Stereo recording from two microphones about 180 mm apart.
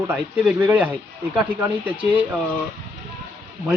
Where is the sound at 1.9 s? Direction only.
30° right (ahead or behind).